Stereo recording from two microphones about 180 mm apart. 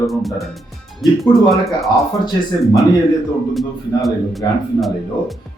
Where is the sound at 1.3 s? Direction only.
Centre (ahead or behind).